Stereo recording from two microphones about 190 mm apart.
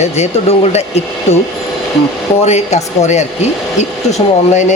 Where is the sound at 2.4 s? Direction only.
35° left (ahead or behind).